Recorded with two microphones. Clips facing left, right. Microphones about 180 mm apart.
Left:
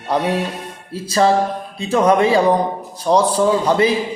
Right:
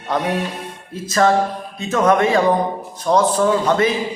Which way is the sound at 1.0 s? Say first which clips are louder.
Left 1 dB; 30° left (ahead or behind).